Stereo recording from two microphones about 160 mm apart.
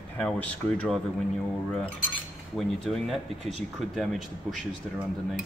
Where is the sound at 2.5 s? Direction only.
Centre (ahead or behind).